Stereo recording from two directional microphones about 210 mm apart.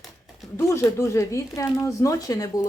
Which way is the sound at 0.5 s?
10° left (ahead or behind).